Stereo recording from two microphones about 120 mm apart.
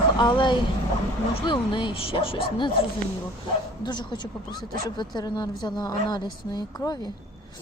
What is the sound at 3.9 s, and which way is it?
A woman's voice, 40° left (ahead or behind).